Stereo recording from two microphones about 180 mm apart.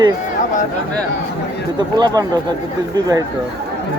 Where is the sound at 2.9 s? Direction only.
20° right (ahead or behind).